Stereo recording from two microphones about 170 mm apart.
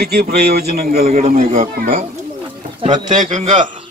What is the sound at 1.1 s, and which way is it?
Speech, 40° right (ahead or behind).